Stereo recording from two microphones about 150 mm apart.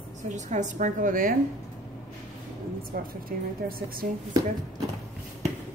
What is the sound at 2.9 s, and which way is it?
Speech, 75° right (ahead or behind).